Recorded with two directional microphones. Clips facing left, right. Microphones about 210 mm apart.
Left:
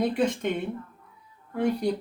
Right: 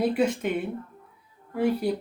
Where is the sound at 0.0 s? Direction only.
5° right (ahead or behind).